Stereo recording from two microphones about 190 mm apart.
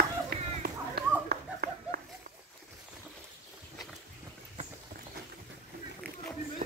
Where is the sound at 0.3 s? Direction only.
55° right (ahead or behind).